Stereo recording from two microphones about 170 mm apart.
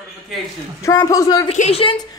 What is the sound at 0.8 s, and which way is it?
Speech, 20° left (ahead or behind).